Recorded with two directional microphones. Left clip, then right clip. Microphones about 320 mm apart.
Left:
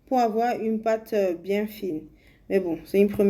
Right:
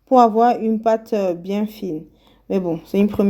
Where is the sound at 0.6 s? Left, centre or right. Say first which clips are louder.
Right 7 dB; right.